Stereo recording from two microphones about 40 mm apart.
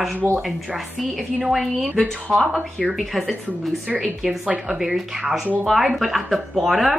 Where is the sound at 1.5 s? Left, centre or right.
Centre.